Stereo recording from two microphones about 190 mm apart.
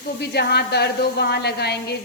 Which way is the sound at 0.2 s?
60° left (ahead or behind).